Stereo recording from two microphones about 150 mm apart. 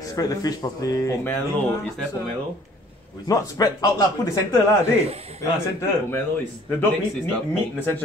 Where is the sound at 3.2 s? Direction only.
25° left (ahead or behind).